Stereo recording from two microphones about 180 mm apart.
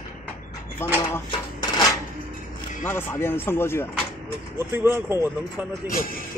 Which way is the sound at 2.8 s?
10° left (ahead or behind).